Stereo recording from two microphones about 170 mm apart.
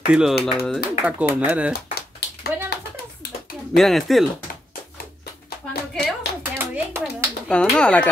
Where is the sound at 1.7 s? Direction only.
70° left (ahead or behind).